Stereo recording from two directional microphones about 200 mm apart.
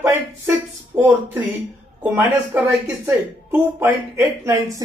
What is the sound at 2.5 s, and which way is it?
Speech, 10° right (ahead or behind).